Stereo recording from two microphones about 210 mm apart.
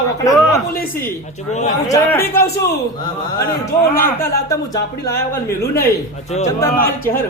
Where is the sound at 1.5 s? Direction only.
35° left (ahead or behind).